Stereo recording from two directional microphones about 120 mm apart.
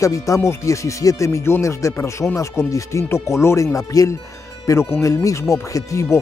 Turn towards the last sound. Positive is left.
turn(degrees=25)  # may be behind; listen again after turning